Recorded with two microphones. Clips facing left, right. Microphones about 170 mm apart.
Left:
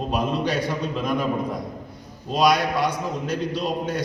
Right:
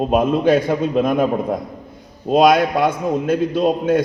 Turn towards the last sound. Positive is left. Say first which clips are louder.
# right 9 dB
turn(degrees=-50)  # may be behind; listen again after turning